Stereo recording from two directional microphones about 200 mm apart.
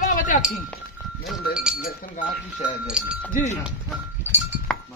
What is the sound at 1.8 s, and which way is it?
Speech, 40° left (ahead or behind).